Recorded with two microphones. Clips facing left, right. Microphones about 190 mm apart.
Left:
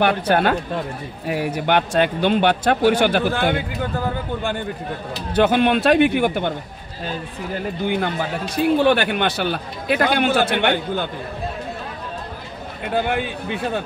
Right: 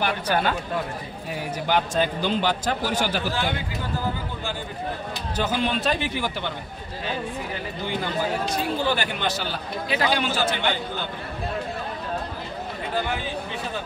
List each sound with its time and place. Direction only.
0.0 s a man's voice: 60° left (ahead or behind)
5.3 s a man's voice: 60° left (ahead or behind)
7.8 s a man's voice: 55° left (ahead or behind)
12.9 s a man's voice: 60° left (ahead or behind)